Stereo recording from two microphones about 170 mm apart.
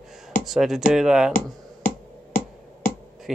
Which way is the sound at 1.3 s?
50° left (ahead or behind).